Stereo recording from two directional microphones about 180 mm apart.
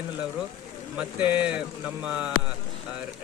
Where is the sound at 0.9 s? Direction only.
10° right (ahead or behind).